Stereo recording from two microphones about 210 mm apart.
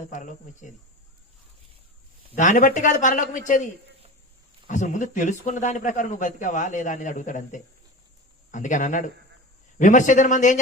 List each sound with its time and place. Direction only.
0.0 s a man's voice: 35° left (ahead or behind)
2.3 s a man's voice: 35° left (ahead or behind)